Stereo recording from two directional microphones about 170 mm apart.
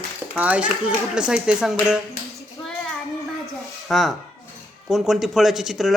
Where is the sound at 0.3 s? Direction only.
10° right (ahead or behind).